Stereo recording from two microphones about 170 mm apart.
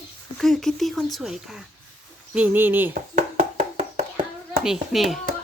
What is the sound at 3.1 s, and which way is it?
Hands, 45° right (ahead or behind).